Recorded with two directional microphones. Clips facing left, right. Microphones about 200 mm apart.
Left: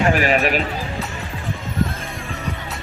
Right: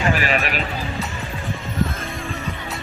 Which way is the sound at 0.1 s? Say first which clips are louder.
Left 4 dB; 45° left (ahead or behind).